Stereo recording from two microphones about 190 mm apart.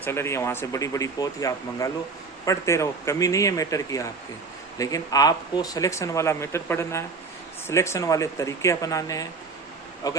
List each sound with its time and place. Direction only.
0.0 s speech: 15° left (ahead or behind)